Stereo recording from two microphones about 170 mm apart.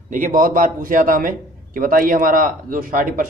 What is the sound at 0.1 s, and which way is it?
A man's voice, 55° right (ahead or behind).